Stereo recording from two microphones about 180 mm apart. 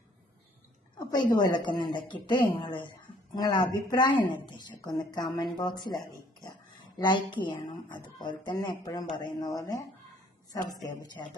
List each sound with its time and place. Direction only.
0.9 s speech: 25° left (ahead or behind)
10.8 s speech: 20° left (ahead or behind)